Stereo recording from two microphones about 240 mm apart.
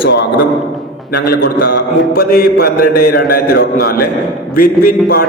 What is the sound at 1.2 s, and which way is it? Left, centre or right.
Mantra, left.